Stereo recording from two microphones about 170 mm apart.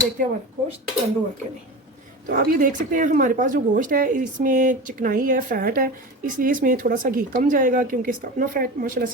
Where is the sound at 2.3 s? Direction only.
55° right (ahead or behind).